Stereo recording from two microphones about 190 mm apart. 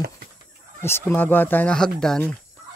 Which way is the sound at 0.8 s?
10° left (ahead or behind).